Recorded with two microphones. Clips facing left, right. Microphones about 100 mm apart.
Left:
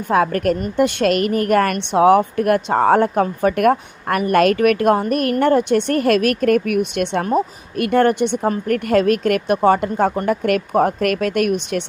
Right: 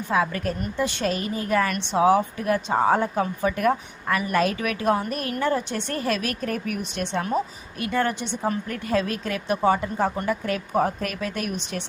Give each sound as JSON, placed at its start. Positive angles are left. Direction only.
{"t": 0.1, "sound": "a woman's voice", "side_deg": 55}
{"t": 11.7, "sound": "a woman's voice", "side_deg": 55}